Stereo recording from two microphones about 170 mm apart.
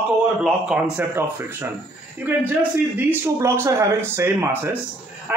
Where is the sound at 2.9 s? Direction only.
15° right (ahead or behind).